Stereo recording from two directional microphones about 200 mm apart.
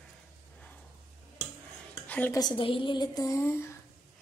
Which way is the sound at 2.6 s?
25° left (ahead or behind).